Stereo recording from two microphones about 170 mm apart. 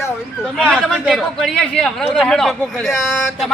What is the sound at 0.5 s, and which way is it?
Speech, 5° left (ahead or behind).